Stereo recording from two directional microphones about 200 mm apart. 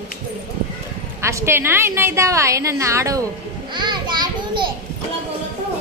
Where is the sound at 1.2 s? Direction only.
15° right (ahead or behind).